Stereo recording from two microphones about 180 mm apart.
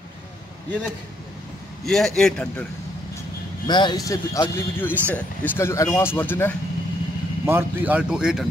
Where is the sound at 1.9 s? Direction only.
Centre (ahead or behind).